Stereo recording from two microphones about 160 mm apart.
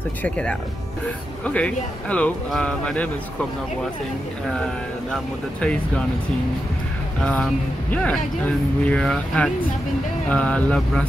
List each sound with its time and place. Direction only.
0.2 s speech: 5° left (ahead or behind)
5.1 s speech: 5° left (ahead or behind)
7.2 s speech: 5° left (ahead or behind)